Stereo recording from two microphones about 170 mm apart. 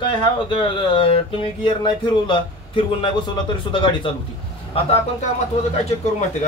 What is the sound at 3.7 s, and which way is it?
Speech, 30° left (ahead or behind).